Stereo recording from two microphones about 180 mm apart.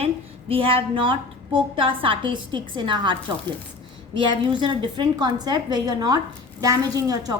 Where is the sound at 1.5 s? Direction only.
30° right (ahead or behind).